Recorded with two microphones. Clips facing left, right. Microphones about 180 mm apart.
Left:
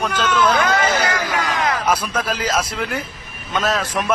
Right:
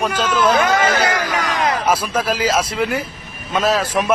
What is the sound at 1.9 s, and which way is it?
Speech, 5° right (ahead or behind).